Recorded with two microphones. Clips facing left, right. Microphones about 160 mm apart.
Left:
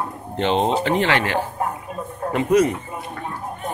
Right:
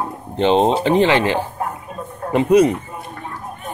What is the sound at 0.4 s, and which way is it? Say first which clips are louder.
Speech: right 5 dB; 20° right (ahead or behind).